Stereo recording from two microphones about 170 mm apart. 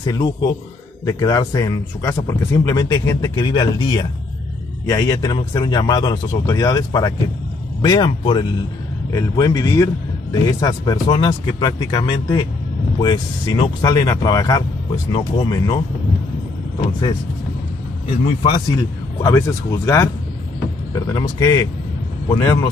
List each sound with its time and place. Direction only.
0.0 s speech: 25° left (ahead or behind)
9.1 s speech: 20° left (ahead or behind)
18.2 s speech: 30° left (ahead or behind)
19.2 s speech: 15° left (ahead or behind)